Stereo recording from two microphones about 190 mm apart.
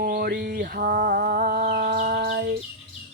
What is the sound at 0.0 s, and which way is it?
Music, 55° right (ahead or behind).